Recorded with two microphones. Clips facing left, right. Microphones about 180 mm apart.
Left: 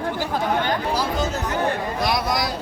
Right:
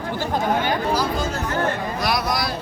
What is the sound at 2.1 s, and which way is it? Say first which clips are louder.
Speech: even; 20° left (ahead or behind).